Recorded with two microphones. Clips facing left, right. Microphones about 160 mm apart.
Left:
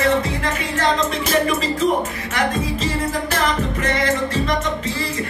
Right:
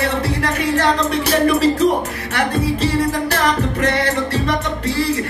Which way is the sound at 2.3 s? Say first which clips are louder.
Right 3 dB; 65° right (ahead or behind).